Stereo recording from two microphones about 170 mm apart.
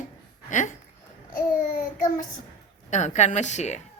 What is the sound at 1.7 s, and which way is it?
Speech, 50° left (ahead or behind).